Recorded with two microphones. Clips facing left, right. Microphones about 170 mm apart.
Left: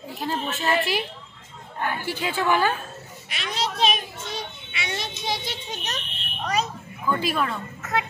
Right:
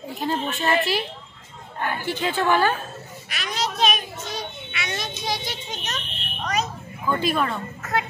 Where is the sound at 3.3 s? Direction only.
25° left (ahead or behind).